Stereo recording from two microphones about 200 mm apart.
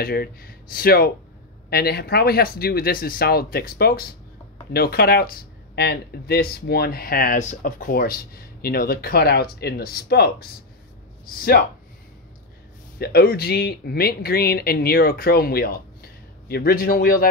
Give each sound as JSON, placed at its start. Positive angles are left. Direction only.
{"t": 0.0, "sound": "speech", "side_deg": 50}
{"t": 13.0, "sound": "speech", "side_deg": 50}